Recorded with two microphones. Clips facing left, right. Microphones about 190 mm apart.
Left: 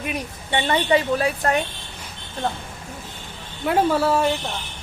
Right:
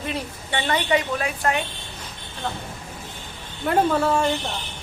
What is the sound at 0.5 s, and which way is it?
A woman's voice, 30° left (ahead or behind).